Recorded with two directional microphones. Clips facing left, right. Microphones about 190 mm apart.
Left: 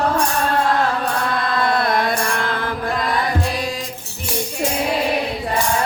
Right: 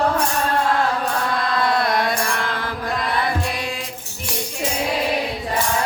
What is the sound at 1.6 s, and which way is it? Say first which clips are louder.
Mantra: left 1 dB; 55° left (ahead or behind).